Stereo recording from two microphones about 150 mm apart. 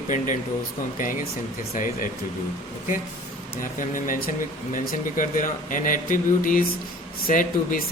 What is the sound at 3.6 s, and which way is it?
Speech, 65° left (ahead or behind).